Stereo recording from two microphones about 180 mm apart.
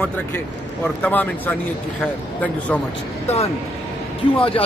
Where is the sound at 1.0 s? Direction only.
10° left (ahead or behind).